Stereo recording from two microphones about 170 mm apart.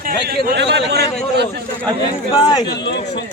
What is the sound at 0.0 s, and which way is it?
Speech, 60° right (ahead or behind).